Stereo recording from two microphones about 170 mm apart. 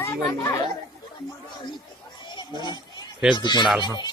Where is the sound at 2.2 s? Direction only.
25° left (ahead or behind).